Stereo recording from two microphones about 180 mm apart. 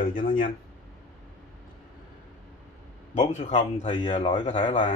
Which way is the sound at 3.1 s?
40° left (ahead or behind).